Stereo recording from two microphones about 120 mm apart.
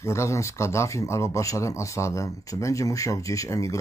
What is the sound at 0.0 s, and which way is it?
Speech, 25° left (ahead or behind).